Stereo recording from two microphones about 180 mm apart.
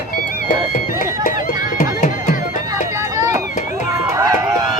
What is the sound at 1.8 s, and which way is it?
Music, 40° left (ahead or behind).